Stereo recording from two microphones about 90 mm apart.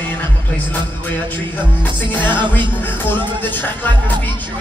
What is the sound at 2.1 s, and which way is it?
Music, 20° left (ahead or behind).